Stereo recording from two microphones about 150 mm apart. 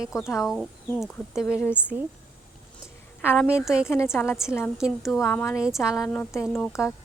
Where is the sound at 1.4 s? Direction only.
15° left (ahead or behind).